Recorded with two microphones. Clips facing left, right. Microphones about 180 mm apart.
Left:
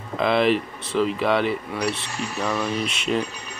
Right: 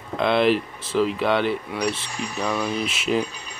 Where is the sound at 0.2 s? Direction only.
Centre (ahead or behind).